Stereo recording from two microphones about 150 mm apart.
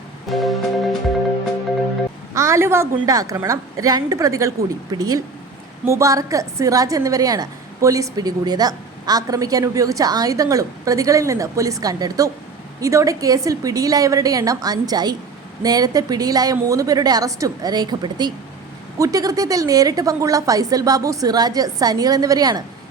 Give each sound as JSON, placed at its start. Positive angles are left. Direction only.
{"t": 0.3, "sound": "music", "side_deg": 0}
{"t": 2.3, "sound": "a woman's voice", "side_deg": -20}